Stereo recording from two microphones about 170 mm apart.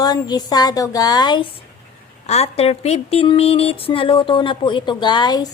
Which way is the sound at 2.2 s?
40° left (ahead or behind).